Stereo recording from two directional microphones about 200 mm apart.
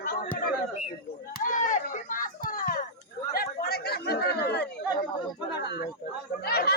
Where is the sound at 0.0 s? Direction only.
45° left (ahead or behind).